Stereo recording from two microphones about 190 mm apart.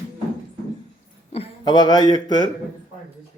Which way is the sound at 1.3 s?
25° left (ahead or behind).